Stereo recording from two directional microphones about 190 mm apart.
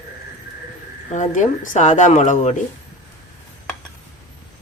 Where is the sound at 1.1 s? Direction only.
40° left (ahead or behind).